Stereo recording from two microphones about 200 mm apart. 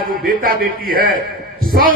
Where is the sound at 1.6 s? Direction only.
45° right (ahead or behind).